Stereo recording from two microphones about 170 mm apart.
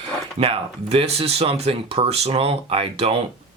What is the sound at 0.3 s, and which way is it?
Speech, 35° right (ahead or behind).